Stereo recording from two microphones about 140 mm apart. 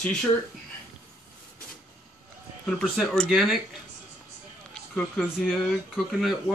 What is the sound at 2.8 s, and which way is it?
Speech, centre (ahead or behind).